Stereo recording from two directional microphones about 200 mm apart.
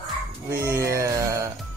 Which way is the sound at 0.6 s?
15° right (ahead or behind).